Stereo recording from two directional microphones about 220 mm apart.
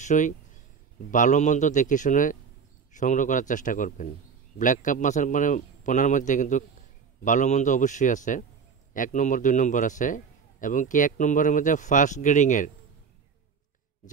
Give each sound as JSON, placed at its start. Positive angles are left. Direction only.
{"t": 0.0, "sound": "a man's voice", "side_deg": 35}